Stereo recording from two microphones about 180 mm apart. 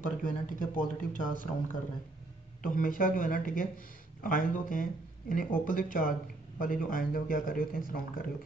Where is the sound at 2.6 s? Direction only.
50° left (ahead or behind).